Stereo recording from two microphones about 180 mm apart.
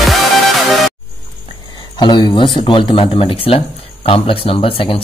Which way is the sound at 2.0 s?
25° left (ahead or behind).